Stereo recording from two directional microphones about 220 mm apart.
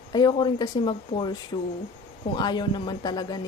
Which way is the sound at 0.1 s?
20° left (ahead or behind).